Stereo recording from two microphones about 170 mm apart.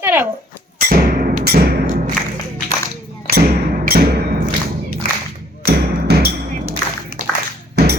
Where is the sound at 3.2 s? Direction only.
60° right (ahead or behind).